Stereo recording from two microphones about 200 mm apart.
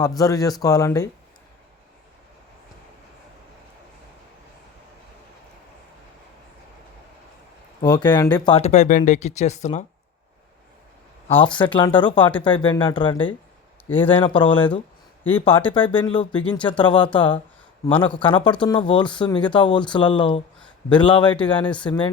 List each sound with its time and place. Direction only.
0.2 s speech: 20° left (ahead or behind)
7.8 s speech: 20° left (ahead or behind)
11.3 s speech: 25° left (ahead or behind)